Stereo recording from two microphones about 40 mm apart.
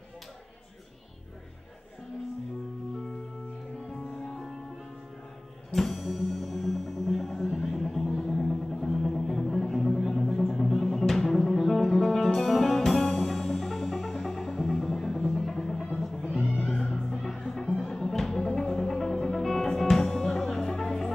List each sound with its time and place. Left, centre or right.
3.9 s music: centre
5.7 s music: centre